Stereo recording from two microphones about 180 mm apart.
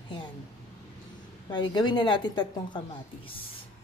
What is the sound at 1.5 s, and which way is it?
Speech, 25° left (ahead or behind).